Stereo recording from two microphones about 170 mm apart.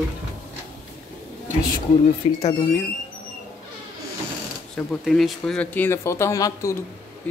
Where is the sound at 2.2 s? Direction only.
40° left (ahead or behind).